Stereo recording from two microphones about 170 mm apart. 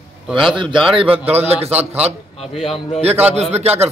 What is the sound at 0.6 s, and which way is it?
A man's voice, 30° right (ahead or behind).